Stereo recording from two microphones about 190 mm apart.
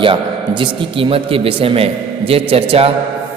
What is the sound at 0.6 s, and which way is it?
A man's voice, 30° right (ahead or behind).